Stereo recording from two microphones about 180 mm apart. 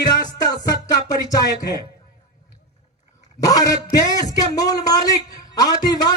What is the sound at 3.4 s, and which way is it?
Speech, 20° left (ahead or behind).